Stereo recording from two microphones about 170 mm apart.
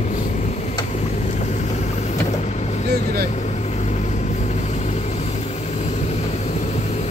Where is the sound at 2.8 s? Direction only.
65° right (ahead or behind).